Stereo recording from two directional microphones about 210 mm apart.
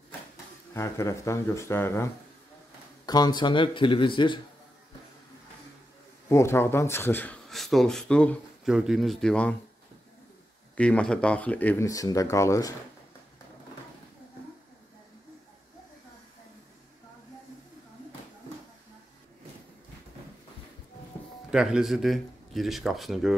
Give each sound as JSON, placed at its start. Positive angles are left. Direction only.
{"t": 0.7, "sound": "speech", "side_deg": 15}
{"t": 3.1, "sound": "speech", "side_deg": 20}
{"t": 6.2, "sound": "speech", "side_deg": 10}
{"t": 10.8, "sound": "speech", "side_deg": 5}
{"t": 21.5, "sound": "speech", "side_deg": -5}